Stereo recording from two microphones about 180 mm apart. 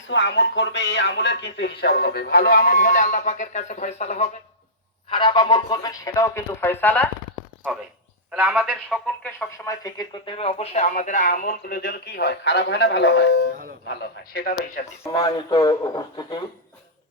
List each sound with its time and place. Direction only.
0.1 s speech: 90° left; by 4.3 s 35° left (ahead or behind)
5.0 s speech: 25° left (ahead or behind); by 7.1 s 10° left (ahead or behind)
8.3 s a man's voice: 5° right (ahead or behind)
9.6 s speech: 20° left (ahead or behind)
10.3 s speech: 35° left (ahead or behind); by 14.7 s 55° left (ahead or behind)
15.0 s speech: 20° left (ahead or behind)